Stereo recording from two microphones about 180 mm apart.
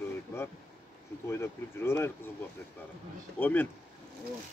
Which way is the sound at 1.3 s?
15° left (ahead or behind).